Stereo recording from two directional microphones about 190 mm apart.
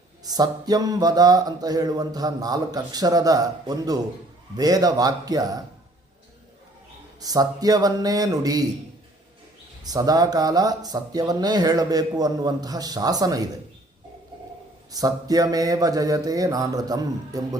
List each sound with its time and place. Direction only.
0.3 s speech: 20° right (ahead or behind)
7.2 s speech: 20° right (ahead or behind)
9.8 s speech: 20° right (ahead or behind)
14.9 s speech: 20° right (ahead or behind)